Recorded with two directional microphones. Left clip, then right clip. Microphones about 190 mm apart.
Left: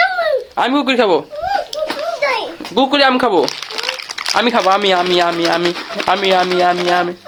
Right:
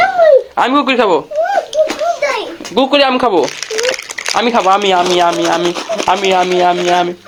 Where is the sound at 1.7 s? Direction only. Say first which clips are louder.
Right 9 dB; 20° left (ahead or behind).